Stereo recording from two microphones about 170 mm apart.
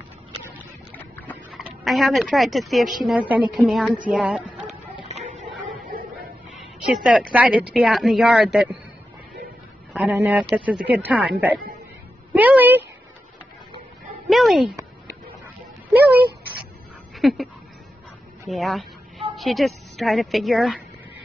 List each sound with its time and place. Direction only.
0.9 s clip-clop: 10° left (ahead or behind)
1.3 s speech: centre (ahead or behind)
5.0 s music: 40° right (ahead or behind)
6.9 s speech: centre (ahead or behind)
9.9 s speech: 5° right (ahead or behind)
14.2 s speech: centre (ahead or behind)
17.2 s a sound: centre (ahead or behind)
18.5 s a sound: centre (ahead or behind)
19.3 s a woman's voice: centre (ahead or behind)